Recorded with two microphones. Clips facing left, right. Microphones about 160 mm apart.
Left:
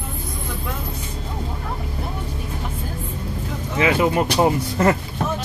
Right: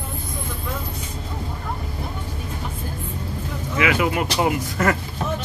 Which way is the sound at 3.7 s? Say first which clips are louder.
Left 3 dB; 30° left (ahead or behind).